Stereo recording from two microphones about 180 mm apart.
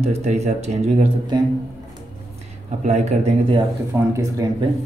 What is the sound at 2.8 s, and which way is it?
Speech, 40° right (ahead or behind).